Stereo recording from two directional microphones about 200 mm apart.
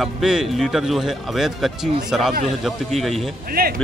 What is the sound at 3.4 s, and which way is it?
Speech, 45° right (ahead or behind).